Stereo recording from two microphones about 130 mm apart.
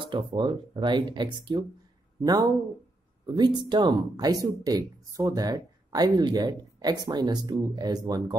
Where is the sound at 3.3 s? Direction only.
35° right (ahead or behind).